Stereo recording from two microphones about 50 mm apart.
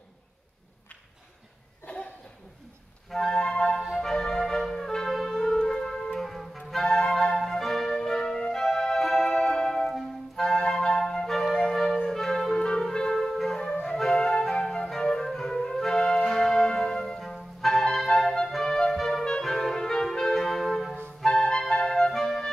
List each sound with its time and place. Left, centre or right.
1.9 s a sound: left
3.1 s music: centre
4.0 s music: centre
6.8 s music: centre
12.1 s clarinet: centre
13.2 s music: centre
14.5 s flute: centre
15.2 s music: centre
17.3 s clarinet: centre
18.0 s music: centre